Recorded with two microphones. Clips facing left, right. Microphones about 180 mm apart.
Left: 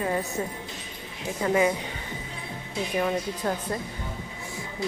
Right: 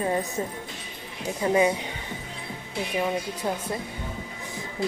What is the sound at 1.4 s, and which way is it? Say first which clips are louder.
Speech: right 1 dB; 20° right (ahead or behind).